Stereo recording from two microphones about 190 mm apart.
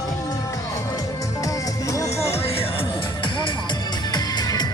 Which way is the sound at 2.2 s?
30° left (ahead or behind).